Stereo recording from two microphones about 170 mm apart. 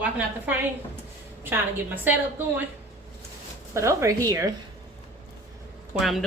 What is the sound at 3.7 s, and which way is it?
Speech, 15° right (ahead or behind).